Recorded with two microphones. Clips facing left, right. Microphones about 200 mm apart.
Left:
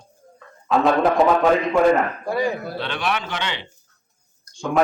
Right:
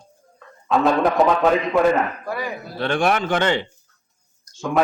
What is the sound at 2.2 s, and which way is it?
Speech, 25° left (ahead or behind).